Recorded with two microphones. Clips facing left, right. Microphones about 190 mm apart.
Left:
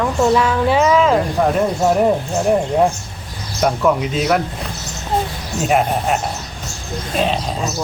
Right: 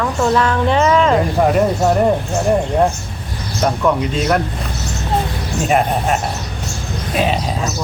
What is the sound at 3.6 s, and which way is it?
Speech, 5° left (ahead or behind).